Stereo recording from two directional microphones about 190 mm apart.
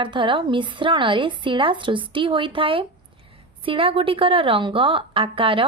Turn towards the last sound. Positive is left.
turn(degrees=-30)  # may be behind; listen again after turning